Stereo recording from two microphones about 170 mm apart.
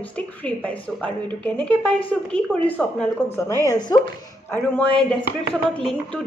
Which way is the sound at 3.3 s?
15° left (ahead or behind).